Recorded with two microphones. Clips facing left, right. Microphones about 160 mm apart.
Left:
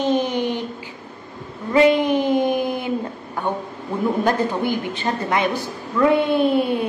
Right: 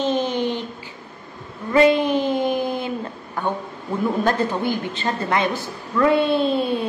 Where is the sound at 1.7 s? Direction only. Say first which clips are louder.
Even; 20° left (ahead or behind).